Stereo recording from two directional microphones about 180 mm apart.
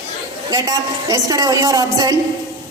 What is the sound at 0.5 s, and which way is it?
A woman's voice, 20° right (ahead or behind).